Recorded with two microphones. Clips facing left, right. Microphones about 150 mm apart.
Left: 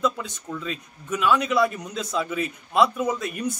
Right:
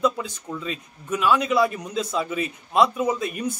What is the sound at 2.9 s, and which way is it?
Speech, 5° right (ahead or behind).